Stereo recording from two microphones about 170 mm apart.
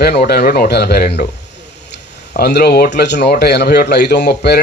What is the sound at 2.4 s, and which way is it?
Speech, 70° left (ahead or behind).